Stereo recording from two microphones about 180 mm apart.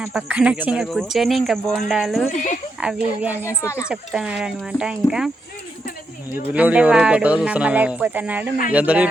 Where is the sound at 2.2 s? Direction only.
40° left (ahead or behind).